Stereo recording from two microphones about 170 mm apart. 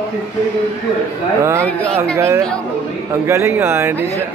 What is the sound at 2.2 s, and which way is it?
Speech, 15° right (ahead or behind).